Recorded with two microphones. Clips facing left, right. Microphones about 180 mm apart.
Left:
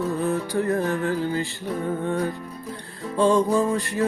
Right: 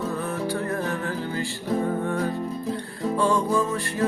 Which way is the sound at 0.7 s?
20° left (ahead or behind).